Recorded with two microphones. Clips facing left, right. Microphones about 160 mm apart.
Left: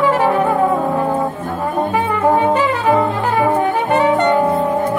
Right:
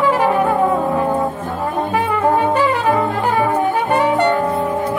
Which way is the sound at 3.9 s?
20° left (ahead or behind).